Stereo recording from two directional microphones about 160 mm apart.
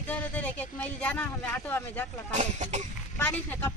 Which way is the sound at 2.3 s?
50° right (ahead or behind).